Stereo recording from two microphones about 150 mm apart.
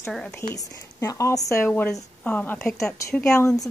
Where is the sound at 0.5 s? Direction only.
20° left (ahead or behind).